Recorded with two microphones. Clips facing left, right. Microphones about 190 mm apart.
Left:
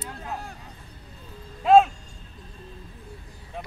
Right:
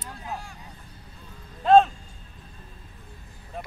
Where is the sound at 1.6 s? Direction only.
5° left (ahead or behind).